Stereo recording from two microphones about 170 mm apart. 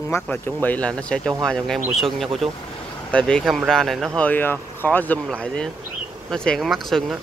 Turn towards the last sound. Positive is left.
turn(degrees=0)  # may be behind; listen again after turning